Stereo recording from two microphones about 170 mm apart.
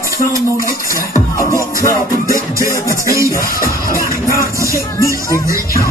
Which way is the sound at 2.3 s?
20° right (ahead or behind).